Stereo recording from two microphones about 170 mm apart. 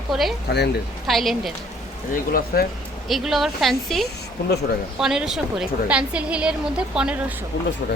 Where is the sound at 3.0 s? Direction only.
Centre (ahead or behind).